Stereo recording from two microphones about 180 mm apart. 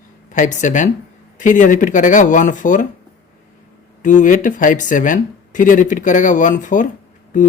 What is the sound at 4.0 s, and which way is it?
Speech, 45° left (ahead or behind).